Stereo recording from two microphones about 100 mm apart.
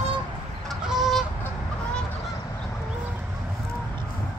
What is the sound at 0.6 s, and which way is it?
Goose, 5° right (ahead or behind).